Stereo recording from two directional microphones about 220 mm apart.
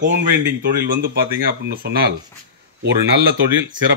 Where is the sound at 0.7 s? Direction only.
40° right (ahead or behind).